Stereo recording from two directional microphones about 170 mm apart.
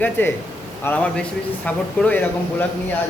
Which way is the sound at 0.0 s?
10° left (ahead or behind).